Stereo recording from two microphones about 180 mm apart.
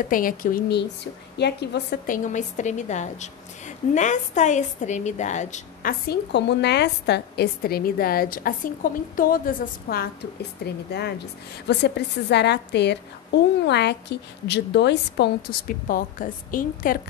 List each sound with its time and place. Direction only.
0.1 s a woman's voice: 50° left (ahead or behind)
1.4 s a woman's voice: 70° left (ahead or behind)
2.0 s a woman's voice: 45° left (ahead or behind)
10.6 s a woman's voice: 65° left (ahead or behind)
15.9 s a woman's voice: 50° left (ahead or behind)